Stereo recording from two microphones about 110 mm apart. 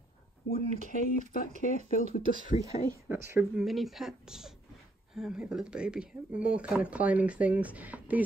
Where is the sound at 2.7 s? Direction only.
90° left.